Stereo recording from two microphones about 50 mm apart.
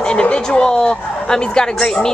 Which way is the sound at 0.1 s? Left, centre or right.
Centre.